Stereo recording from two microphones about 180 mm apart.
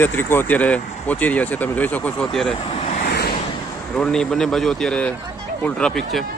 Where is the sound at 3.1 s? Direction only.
60° left (ahead or behind).